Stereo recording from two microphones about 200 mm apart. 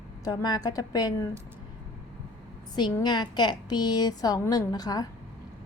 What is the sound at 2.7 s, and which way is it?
A woman's voice, 20° left (ahead or behind).